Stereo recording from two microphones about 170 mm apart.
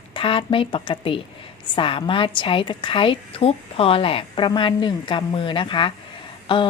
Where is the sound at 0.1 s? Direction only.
30° left (ahead or behind).